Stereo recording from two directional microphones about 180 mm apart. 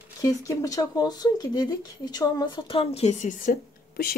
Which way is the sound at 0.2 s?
20° left (ahead or behind).